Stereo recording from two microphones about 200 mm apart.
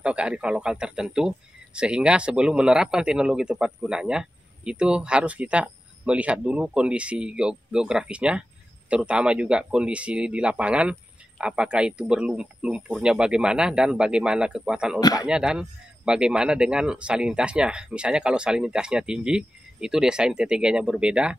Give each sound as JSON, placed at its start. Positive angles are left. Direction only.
{"t": 0.0, "sound": "speech", "side_deg": -5}
{"t": 15.0, "sound": "speech", "side_deg": 20}
{"t": 15.2, "sound": "speech", "side_deg": -5}